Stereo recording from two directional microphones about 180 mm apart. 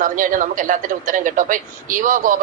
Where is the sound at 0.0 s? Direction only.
50° right (ahead or behind).